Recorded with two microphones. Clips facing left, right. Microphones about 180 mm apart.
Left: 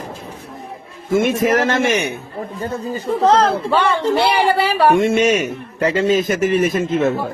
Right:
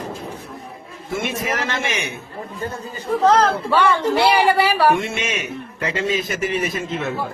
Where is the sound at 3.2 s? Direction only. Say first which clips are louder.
Left 2 dB; 20° left (ahead or behind).